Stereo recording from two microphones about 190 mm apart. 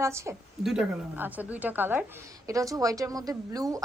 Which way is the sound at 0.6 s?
5° right (ahead or behind).